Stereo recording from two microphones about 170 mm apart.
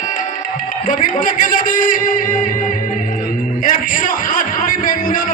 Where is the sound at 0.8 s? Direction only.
50° left (ahead or behind).